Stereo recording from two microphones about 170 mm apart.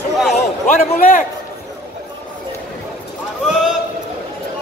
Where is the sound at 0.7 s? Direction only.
55° left (ahead or behind).